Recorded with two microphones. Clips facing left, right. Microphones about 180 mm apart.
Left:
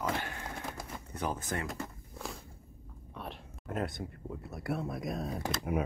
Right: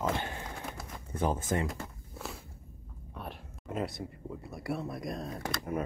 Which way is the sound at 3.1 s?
Centre (ahead or behind).